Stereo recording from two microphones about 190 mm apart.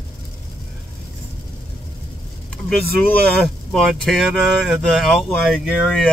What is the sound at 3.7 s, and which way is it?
Speech, centre (ahead or behind).